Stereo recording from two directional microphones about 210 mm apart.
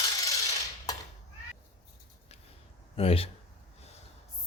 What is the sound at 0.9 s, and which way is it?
Cat, 15° left (ahead or behind).